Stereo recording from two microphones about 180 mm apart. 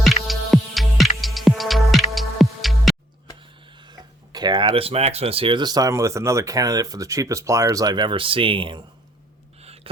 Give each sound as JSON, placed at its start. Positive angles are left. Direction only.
{"t": 0.3, "sound": "music", "side_deg": 0}
{"t": 3.8, "sound": "speech", "side_deg": -25}
{"t": 9.6, "sound": "a sound", "side_deg": -35}